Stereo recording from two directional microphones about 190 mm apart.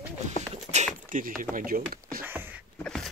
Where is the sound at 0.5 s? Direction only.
35° right (ahead or behind).